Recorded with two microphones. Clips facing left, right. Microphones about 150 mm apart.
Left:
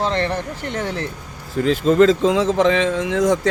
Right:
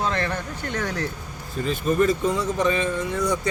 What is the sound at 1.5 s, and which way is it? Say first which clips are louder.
Speech: left 7 dB; 90° left.